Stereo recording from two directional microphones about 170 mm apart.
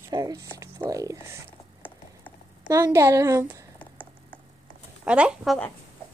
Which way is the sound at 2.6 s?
20° right (ahead or behind).